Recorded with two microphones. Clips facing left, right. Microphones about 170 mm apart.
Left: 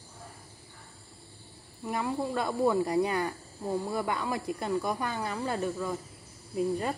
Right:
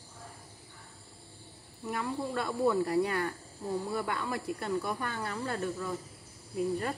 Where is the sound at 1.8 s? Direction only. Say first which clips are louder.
Left 3 dB; 15° left (ahead or behind).